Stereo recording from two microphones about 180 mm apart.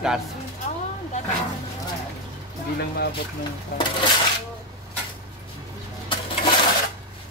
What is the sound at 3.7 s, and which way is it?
Coin, 60° left (ahead or behind).